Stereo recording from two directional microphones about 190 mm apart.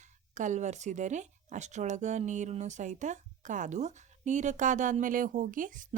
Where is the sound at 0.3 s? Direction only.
40° right (ahead or behind).